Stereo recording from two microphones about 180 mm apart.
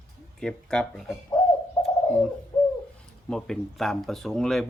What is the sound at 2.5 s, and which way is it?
Bird, 20° left (ahead or behind).